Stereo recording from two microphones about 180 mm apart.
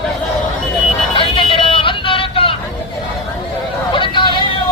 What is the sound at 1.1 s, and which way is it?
Vehicle, 30° left (ahead or behind).